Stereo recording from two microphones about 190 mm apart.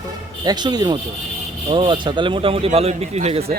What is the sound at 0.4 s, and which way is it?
A man's voice, 20° right (ahead or behind).